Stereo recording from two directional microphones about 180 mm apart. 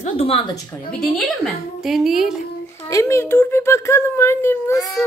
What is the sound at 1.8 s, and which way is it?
Speech, centre (ahead or behind).